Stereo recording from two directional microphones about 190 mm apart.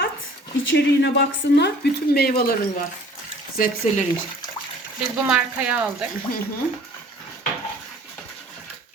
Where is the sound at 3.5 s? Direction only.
45° left (ahead or behind).